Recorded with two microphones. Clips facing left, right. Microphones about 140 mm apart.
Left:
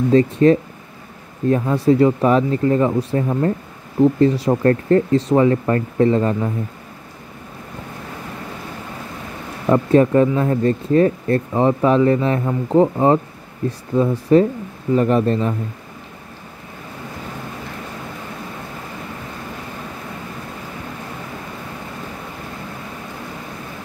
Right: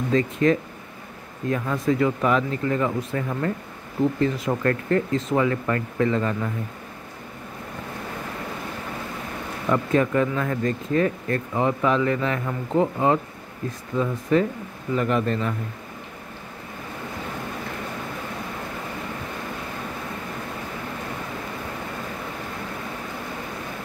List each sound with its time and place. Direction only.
0.1 s speech: 35° left (ahead or behind)
9.7 s speech: 30° left (ahead or behind)
14.3 s speech: 35° left (ahead or behind)